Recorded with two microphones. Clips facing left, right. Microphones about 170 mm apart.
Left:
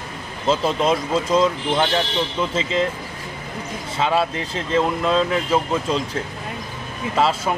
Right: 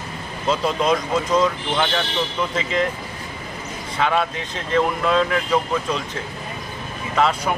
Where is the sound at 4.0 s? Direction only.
30° left (ahead or behind).